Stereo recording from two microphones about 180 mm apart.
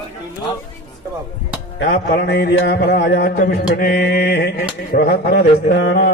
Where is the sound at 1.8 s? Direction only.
60° left (ahead or behind).